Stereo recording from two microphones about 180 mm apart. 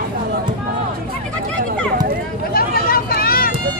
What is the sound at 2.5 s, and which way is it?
Vehicle, 55° left (ahead or behind).